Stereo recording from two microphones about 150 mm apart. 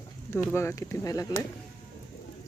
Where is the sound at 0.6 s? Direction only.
20° left (ahead or behind).